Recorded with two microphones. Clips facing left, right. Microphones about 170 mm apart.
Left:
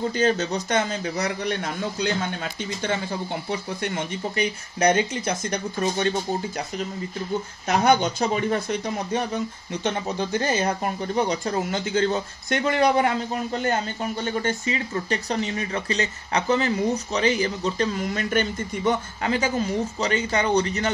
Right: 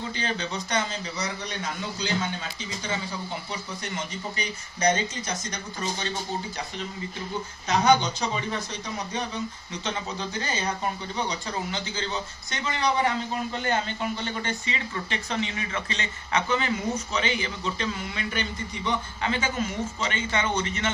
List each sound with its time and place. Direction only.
0.0 s speech: 45° left (ahead or behind)
3.8 s speech: 55° left (ahead or behind)
7.6 s speech: 55° left (ahead or behind)
14.2 s a man's voice: 45° left (ahead or behind)